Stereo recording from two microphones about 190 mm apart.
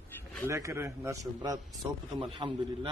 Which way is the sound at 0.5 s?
15° right (ahead or behind).